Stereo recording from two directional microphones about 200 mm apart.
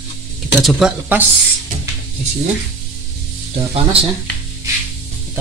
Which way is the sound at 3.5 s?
30° right (ahead or behind).